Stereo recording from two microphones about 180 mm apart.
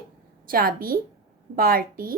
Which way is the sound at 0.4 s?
55° right (ahead or behind).